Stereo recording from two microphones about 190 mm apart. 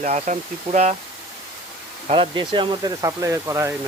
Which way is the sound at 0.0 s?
40° right (ahead or behind).